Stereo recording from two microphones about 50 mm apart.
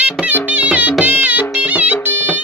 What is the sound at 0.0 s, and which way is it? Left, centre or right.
Music, right.